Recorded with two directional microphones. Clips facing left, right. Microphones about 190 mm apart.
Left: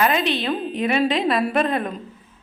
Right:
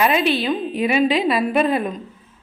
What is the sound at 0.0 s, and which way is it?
A woman's voice, 5° right (ahead or behind).